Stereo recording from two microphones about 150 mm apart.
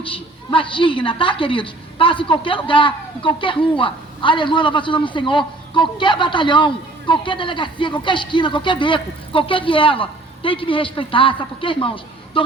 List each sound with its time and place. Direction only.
0.0 s a woman's voice: 35° left (ahead or behind)